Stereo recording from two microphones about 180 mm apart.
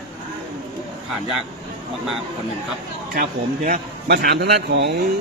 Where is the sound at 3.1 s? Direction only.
50° right (ahead or behind); by 4.9 s 65° right (ahead or behind).